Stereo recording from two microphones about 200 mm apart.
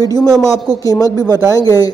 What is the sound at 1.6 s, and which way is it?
Speech, 20° left (ahead or behind).